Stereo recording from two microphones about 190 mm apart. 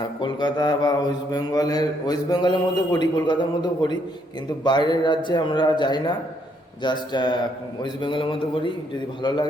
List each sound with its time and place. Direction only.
0.2 s mantra: 25° left (ahead or behind)